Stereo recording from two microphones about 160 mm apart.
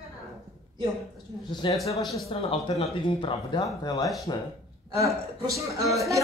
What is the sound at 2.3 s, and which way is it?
Speech, 35° left (ahead or behind).